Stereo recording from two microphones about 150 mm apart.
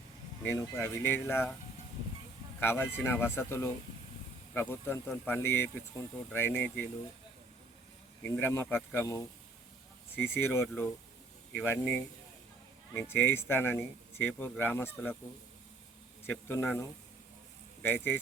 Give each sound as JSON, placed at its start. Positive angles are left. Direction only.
{"t": 0.4, "sound": "speech", "side_deg": 15}
{"t": 2.6, "sound": "speech", "side_deg": 15}
{"t": 8.2, "sound": "speech", "side_deg": 15}
{"t": 10.4, "sound": "speech", "side_deg": 15}
{"t": 16.2, "sound": "speech", "side_deg": 15}